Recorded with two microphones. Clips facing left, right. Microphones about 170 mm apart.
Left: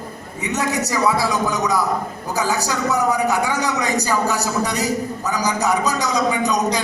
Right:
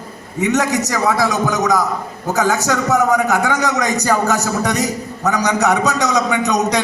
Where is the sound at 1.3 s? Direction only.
85° right.